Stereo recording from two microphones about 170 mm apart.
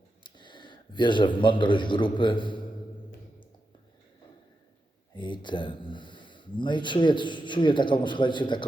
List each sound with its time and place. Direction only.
0.2 s a man's voice: 25° left (ahead or behind)
5.1 s speech: 25° left (ahead or behind)